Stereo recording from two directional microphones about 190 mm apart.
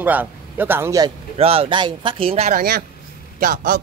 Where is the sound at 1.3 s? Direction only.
30° right (ahead or behind).